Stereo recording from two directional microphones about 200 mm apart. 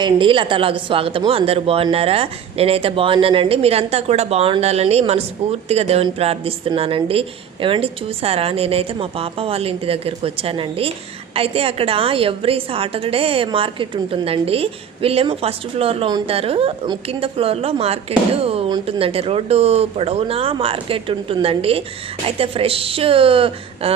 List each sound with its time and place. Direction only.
0.0 s speech: 25° right (ahead or behind)